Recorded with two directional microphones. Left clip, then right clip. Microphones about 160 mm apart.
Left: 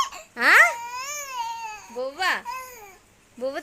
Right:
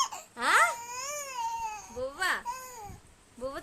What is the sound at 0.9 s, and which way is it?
Baby cry, 35° right (ahead or behind).